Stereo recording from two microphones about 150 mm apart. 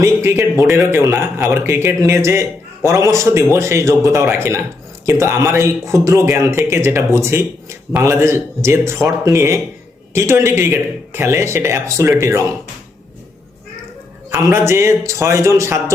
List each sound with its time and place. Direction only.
0.0 s a man's voice: 20° right (ahead or behind)
14.3 s a man's voice: 15° right (ahead or behind)